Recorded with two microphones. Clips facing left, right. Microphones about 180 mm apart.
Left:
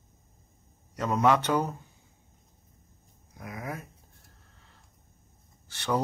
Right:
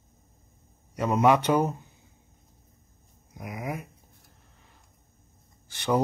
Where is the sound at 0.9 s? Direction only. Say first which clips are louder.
Right 3 dB; 15° right (ahead or behind).